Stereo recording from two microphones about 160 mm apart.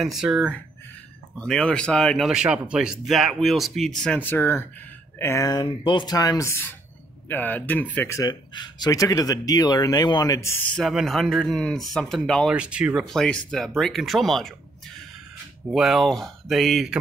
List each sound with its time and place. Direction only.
0.0 s speech: 5° right (ahead or behind)
8.2 s speech: 25° left (ahead or behind)
10.7 s speech: centre (ahead or behind)
15.7 s speech: centre (ahead or behind)